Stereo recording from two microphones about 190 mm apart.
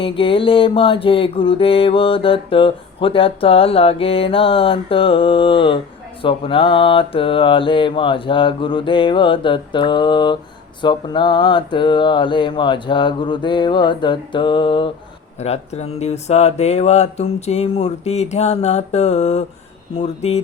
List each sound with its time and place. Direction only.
0.0 s mantra: 30° left (ahead or behind)
15.4 s speech: 35° left (ahead or behind)